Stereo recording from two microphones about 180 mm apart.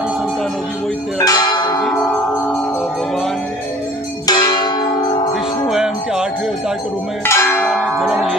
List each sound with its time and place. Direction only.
1.2 s bell: 20° left (ahead or behind)
1.8 s tubular bells: 5° left (ahead or behind)
4.3 s church bell: 20° left (ahead or behind)
5.7 s music: 5° right (ahead or behind)
7.2 s church bell: 15° left (ahead or behind)